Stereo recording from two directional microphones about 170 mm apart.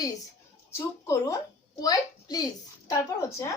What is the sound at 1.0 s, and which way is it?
A woman's voice, 20° left (ahead or behind).